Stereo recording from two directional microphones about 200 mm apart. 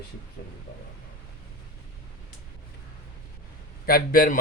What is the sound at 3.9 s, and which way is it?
Speech, 45° left (ahead or behind).